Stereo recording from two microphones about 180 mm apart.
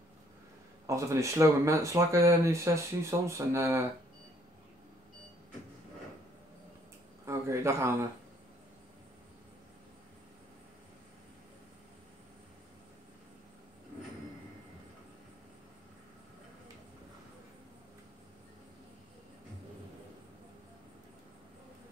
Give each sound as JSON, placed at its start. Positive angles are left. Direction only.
{"t": 0.8, "sound": "speech", "side_deg": -15}
{"t": 7.2, "sound": "a man's voice", "side_deg": -15}